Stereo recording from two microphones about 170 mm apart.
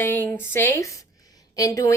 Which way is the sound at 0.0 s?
10° left (ahead or behind).